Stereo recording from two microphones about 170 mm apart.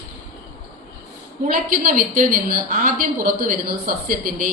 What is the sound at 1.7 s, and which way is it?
A woman's voice, 50° right (ahead or behind).